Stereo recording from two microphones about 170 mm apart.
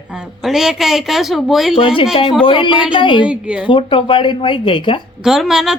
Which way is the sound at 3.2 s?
5° right (ahead or behind).